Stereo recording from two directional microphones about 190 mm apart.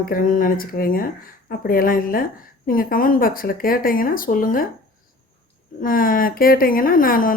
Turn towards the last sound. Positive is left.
turn(degrees=45)  # may be behind; listen again after turning